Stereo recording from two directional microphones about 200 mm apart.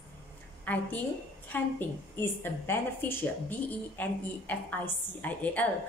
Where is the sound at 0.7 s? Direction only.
10° left (ahead or behind).